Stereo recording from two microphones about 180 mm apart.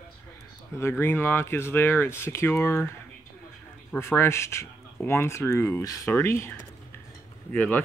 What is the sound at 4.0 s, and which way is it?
Speech, 15° left (ahead or behind).